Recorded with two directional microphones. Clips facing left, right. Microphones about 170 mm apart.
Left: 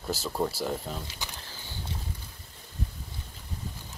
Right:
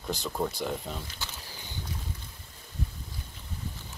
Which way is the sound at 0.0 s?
5° left (ahead or behind).